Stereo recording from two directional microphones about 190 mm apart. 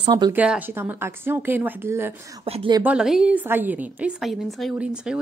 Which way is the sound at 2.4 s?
30° right (ahead or behind).